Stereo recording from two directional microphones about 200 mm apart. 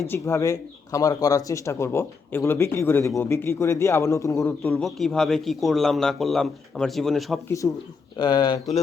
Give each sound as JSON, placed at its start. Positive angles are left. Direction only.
{"t": 0.1, "sound": "a man's voice", "side_deg": 15}
{"t": 7.4, "sound": "speech", "side_deg": 15}